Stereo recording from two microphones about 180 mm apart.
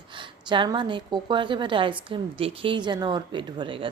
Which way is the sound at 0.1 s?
25° right (ahead or behind).